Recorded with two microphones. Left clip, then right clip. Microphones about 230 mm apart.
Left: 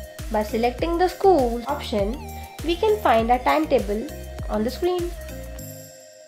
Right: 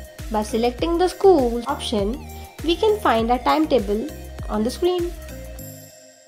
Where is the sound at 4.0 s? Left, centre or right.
Centre.